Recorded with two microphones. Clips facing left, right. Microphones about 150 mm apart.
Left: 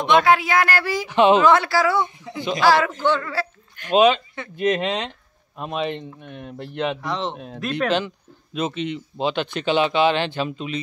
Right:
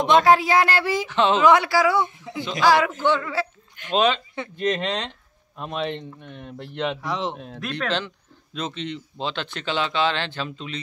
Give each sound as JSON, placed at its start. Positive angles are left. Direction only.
{"t": 0.0, "sound": "speech", "side_deg": -40}
{"t": 1.0, "sound": "speech", "side_deg": 15}
{"t": 1.4, "sound": "speech", "side_deg": -15}
{"t": 3.9, "sound": "speech", "side_deg": 10}
{"t": 7.1, "sound": "speech", "side_deg": -10}
{"t": 7.3, "sound": "speech", "side_deg": 5}